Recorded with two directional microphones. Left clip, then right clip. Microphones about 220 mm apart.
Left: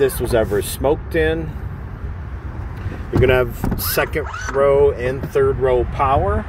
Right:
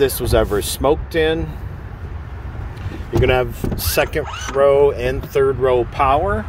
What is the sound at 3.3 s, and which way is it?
Speech, 5° right (ahead or behind).